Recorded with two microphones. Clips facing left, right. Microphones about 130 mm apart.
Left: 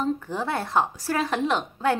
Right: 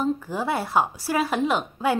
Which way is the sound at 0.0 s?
5° right (ahead or behind).